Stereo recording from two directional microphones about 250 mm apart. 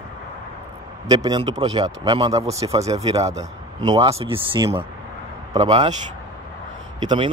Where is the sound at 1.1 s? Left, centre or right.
Centre.